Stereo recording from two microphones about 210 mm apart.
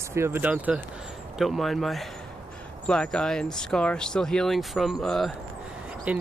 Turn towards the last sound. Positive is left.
turn(degrees=-5)  # may be behind; listen again after turning